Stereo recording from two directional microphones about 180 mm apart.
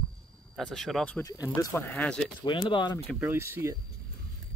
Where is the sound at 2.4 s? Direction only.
25° left (ahead or behind).